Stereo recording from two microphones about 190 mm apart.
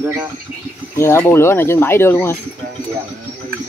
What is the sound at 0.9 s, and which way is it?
Speech, 15° left (ahead or behind).